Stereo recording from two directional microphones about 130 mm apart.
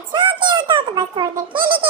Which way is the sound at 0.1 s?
35° right (ahead or behind).